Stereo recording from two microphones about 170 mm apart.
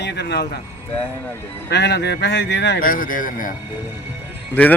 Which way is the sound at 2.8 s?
55° left (ahead or behind).